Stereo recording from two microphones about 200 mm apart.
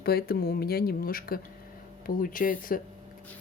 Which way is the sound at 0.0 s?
50° left (ahead or behind).